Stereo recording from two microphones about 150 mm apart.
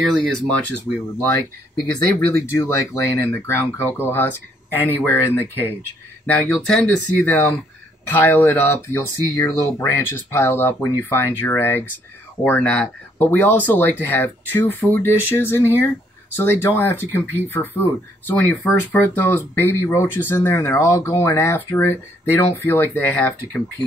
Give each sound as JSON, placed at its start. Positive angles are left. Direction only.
{"t": 0.0, "sound": "speech", "side_deg": 0}
{"t": 2.1, "sound": "speech", "side_deg": 15}